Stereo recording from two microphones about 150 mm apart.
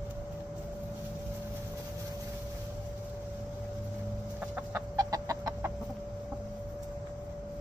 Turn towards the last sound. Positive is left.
turn(degrees=-25)  # may be behind; listen again after turning